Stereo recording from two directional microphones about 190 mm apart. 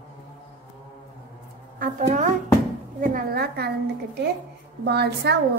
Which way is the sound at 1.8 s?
40° right (ahead or behind).